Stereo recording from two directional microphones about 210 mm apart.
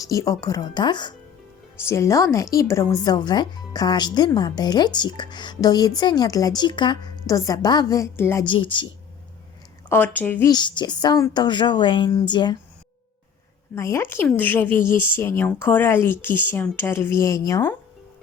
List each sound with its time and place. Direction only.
0.1 s speech: 15° left (ahead or behind)
8.4 s speech: 25° left (ahead or behind)
9.9 s speech: 10° left (ahead or behind)
10.5 s speech: 20° left (ahead or behind)
13.7 s speech: 15° left (ahead or behind)